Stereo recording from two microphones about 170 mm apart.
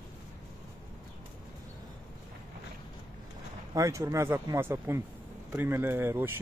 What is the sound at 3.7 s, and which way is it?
Speech, 20° right (ahead or behind).